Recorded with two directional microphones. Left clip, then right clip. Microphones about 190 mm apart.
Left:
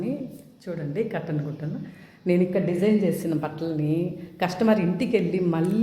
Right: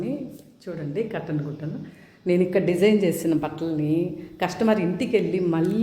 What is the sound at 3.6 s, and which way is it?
A woman's voice, centre (ahead or behind).